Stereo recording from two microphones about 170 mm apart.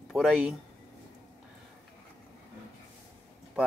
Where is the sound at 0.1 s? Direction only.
5° right (ahead or behind).